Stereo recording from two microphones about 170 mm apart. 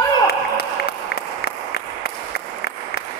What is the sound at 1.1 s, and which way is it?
Applause, 70° left (ahead or behind).